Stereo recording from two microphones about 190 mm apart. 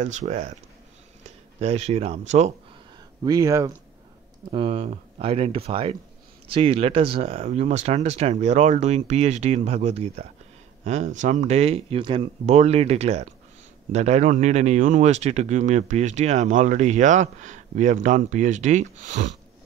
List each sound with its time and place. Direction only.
0.0 s speech: 40° right (ahead or behind)
1.6 s speech: 35° right (ahead or behind)
3.3 s speech: 20° right (ahead or behind)
4.5 s speech: 30° right (ahead or behind)